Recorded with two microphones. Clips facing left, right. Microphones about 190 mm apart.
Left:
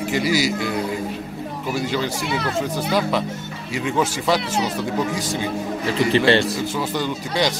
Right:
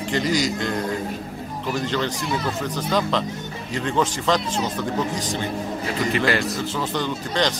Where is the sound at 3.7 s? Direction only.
10° left (ahead or behind).